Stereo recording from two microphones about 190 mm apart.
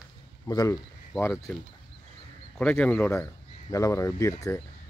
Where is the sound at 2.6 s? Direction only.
5° left (ahead or behind).